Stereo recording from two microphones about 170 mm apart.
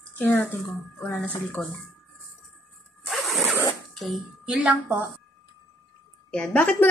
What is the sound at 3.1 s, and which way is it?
Zipper, centre (ahead or behind).